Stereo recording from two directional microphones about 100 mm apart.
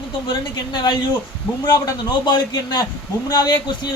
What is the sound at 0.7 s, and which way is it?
Speech, 45° left (ahead or behind).